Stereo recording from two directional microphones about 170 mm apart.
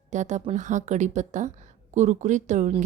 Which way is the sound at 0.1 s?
45° right (ahead or behind).